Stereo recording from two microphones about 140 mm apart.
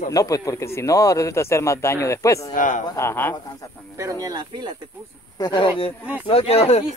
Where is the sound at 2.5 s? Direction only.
65° left (ahead or behind).